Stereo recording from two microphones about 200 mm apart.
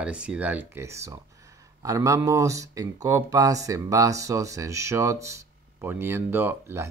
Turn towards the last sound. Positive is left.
turn(degrees=-10)  # may be behind; listen again after turning